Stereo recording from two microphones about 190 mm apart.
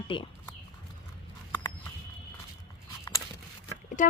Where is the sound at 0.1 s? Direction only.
25° left (ahead or behind).